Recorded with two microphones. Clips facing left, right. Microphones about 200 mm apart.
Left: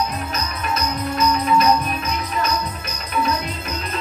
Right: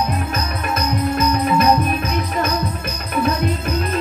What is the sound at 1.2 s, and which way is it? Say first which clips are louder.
Music: left 1 dB; 55° right (ahead or behind).